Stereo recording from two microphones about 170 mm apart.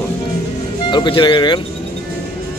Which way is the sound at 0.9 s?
30° left (ahead or behind).